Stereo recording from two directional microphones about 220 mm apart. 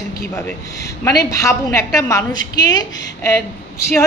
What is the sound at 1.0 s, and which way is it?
A woman's voice, 15° left (ahead or behind).